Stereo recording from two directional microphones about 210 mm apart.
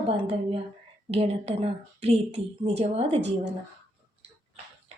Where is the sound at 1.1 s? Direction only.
30° right (ahead or behind).